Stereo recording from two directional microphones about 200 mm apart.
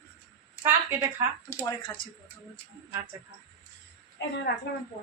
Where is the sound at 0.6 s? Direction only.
10° right (ahead or behind).